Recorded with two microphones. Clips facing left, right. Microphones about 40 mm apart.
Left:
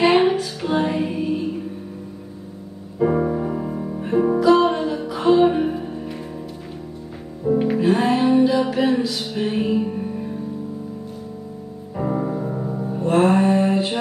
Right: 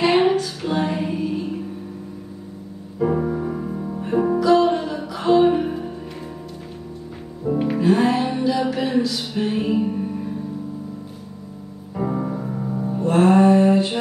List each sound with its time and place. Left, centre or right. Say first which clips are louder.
0.0 s music: left 1 dB; centre
3.0 s music: left 2 dB; centre
7.4 s music: left 1 dB; centre
9.6 s music: left 1 dB; centre
12.0 s music: left 1 dB; centre